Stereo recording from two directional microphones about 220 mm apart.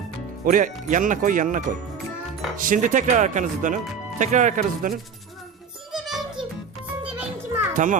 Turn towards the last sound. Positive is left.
turn(degrees=-35)  # may be behind; listen again after turning